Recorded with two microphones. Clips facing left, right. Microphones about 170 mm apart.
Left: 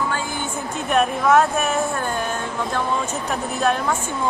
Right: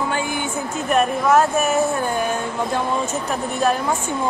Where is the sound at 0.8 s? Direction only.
Centre (ahead or behind).